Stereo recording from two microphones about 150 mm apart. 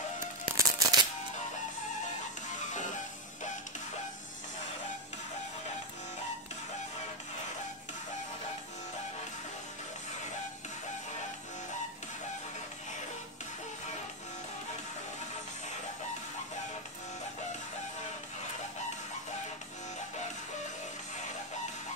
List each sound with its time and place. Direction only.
0.6 s music: 25° right (ahead or behind)
2.7 s music: 55° left (ahead or behind)